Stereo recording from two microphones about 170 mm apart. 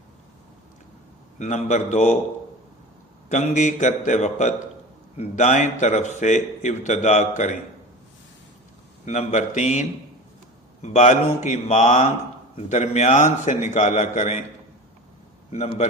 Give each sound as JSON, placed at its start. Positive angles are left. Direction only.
{"t": 1.4, "sound": "a man's voice", "side_deg": 45}
{"t": 3.2, "sound": "a man's voice", "side_deg": 45}
{"t": 9.0, "sound": "a man's voice", "side_deg": 45}
{"t": 10.8, "sound": "a man's voice", "side_deg": 45}
{"t": 15.4, "sound": "a man's voice", "side_deg": 40}